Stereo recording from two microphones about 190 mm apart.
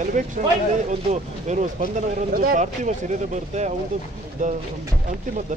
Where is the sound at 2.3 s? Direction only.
50° right (ahead or behind).